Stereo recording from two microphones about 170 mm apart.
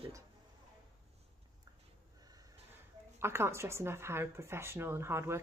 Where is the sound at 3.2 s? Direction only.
15° right (ahead or behind).